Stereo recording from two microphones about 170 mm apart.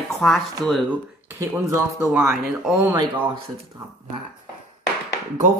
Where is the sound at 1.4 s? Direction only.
15° right (ahead or behind).